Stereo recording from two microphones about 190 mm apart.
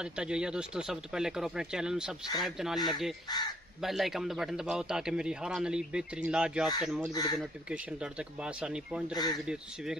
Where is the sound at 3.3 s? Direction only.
20° left (ahead or behind).